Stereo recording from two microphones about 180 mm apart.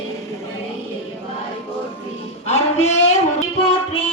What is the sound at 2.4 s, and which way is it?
Music, 40° left (ahead or behind).